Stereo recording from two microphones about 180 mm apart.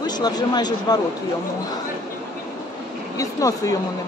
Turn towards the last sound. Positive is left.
turn(degrees=20)  # may be behind; listen again after turning